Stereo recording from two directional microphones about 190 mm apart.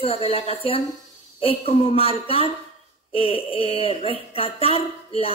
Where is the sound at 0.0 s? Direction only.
30° left (ahead or behind).